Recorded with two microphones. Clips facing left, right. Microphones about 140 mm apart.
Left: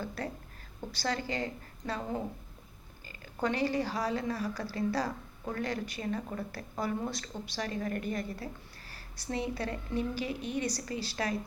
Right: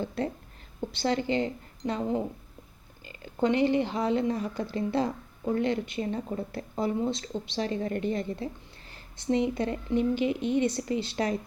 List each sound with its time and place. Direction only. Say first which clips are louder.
0.0 s speech: right 6 dB; 25° right (ahead or behind)